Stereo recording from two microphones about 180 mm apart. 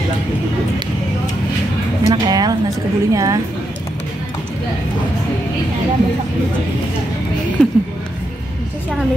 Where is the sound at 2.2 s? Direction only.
20° right (ahead or behind).